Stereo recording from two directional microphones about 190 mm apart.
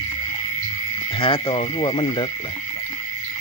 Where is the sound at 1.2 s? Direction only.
30° left (ahead or behind).